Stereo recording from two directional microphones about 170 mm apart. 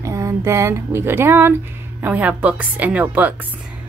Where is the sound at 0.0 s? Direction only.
20° right (ahead or behind).